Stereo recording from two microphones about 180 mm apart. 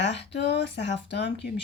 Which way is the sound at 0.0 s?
75° left (ahead or behind).